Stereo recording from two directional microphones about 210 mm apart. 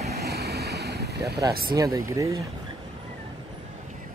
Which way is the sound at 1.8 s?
15° right (ahead or behind).